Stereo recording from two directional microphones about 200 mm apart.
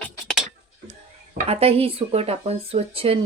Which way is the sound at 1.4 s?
30° right (ahead or behind).